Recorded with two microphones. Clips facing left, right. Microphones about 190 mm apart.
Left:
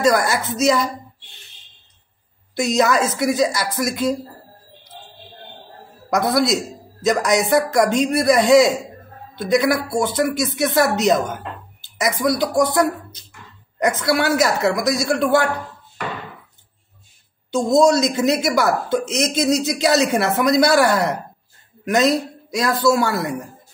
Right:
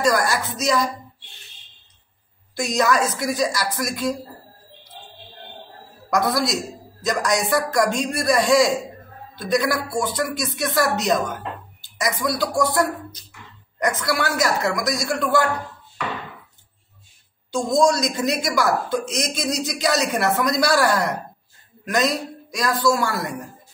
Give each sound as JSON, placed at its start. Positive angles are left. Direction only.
{"t": 0.0, "sound": "a woman's voice", "side_deg": 25}
{"t": 2.5, "sound": "a woman's voice", "side_deg": 25}
{"t": 6.0, "sound": "a woman's voice", "side_deg": 25}
{"t": 17.5, "sound": "a woman's voice", "side_deg": 25}